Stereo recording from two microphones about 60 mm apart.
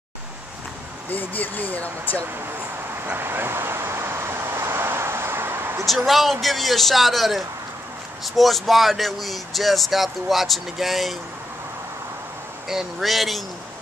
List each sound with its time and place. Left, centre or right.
1.1 s speech: left
3.2 s vehicle: right
6.0 s speech: centre
12.6 s speech: centre